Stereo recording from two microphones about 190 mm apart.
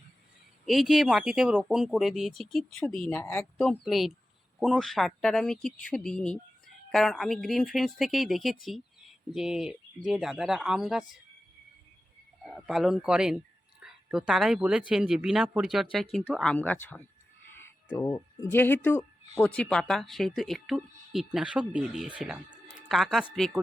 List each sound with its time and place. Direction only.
0.6 s speech: centre (ahead or behind)
12.4 s speech: centre (ahead or behind)
17.9 s speech: 15° left (ahead or behind)